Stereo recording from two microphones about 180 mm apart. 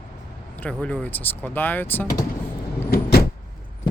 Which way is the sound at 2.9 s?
55° left (ahead or behind).